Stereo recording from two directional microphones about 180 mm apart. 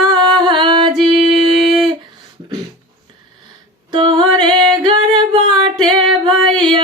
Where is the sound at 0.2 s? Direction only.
25° right (ahead or behind).